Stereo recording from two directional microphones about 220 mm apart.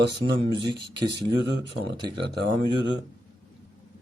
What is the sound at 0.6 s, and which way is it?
Speech, 20° right (ahead or behind).